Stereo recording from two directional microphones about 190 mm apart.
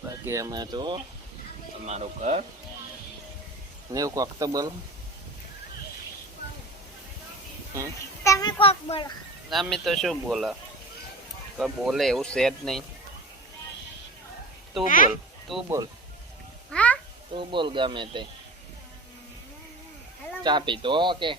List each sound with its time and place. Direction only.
0.0 s speech: 15° right (ahead or behind)
1.8 s speech: 35° right (ahead or behind)
3.9 s speech: 20° right (ahead or behind)
8.2 s a child's voice: 15° left (ahead or behind)
9.5 s speech: centre (ahead or behind)
11.5 s speech: centre (ahead or behind)
14.8 s speech: 45° left (ahead or behind)
15.5 s speech: centre (ahead or behind)
16.7 s a sound: 5° left (ahead or behind)
17.3 s speech: 25° right (ahead or behind)
20.4 s speech: 25° right (ahead or behind)